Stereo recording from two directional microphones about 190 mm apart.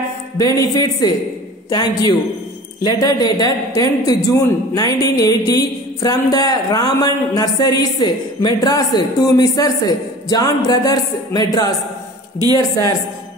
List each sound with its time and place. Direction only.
0.4 s a woman's voice: 20° left (ahead or behind)